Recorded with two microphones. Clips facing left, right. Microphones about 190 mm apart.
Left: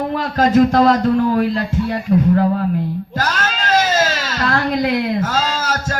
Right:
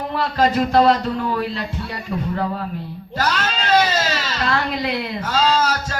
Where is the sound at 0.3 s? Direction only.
45° left (ahead or behind).